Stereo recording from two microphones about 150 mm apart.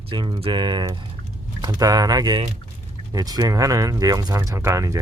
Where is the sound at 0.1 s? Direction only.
35° right (ahead or behind).